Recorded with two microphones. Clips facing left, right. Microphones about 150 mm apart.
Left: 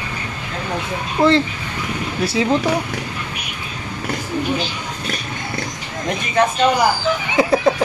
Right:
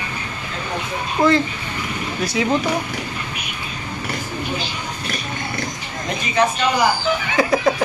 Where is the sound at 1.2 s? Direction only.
30° left (ahead or behind).